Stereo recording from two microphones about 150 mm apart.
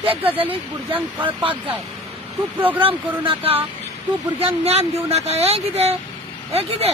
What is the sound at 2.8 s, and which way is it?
Speech, 40° right (ahead or behind).